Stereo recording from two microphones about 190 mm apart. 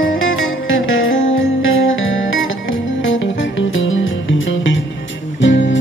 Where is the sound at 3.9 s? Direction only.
90° left.